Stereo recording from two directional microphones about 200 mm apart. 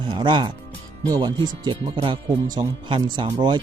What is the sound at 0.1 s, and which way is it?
Speech, 25° right (ahead or behind).